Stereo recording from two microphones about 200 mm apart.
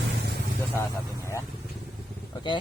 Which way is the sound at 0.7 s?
15° left (ahead or behind).